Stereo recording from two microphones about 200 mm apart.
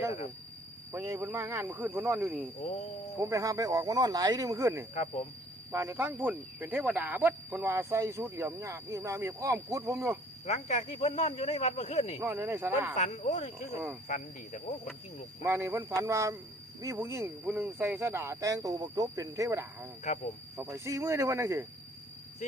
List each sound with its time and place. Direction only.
0.9 s speech: 15° right (ahead or behind)
2.6 s speech: 35° left (ahead or behind)
3.2 s speech: 15° right (ahead or behind)
10.4 s speech: 35° left (ahead or behind)
12.2 s speech: 10° right (ahead or behind)
12.9 s speech: 40° left (ahead or behind)
15.4 s speech: 15° right (ahead or behind)